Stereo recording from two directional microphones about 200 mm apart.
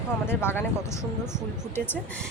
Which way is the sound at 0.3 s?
10° left (ahead or behind).